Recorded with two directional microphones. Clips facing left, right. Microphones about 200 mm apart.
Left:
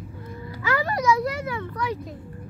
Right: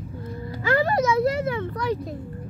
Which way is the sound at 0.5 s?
25° right (ahead or behind).